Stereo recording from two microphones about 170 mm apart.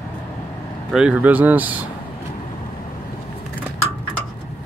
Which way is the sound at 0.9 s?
5° right (ahead or behind).